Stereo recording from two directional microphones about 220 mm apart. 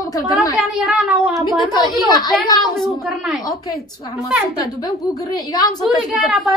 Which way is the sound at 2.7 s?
Centre (ahead or behind).